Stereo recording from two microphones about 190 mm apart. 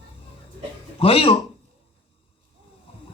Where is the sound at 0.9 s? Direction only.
30° left (ahead or behind).